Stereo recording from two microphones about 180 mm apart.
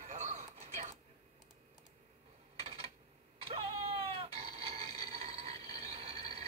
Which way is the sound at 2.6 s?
30° right (ahead or behind).